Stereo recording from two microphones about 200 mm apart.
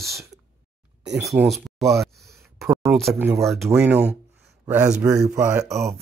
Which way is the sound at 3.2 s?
15° right (ahead or behind).